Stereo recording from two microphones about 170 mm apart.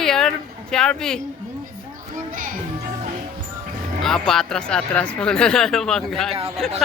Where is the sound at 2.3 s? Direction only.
50° right (ahead or behind).